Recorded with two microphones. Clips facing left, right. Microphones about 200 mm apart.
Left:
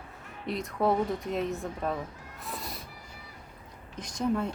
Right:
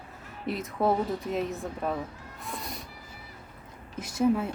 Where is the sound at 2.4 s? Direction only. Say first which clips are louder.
Right 1 dB; centre (ahead or behind).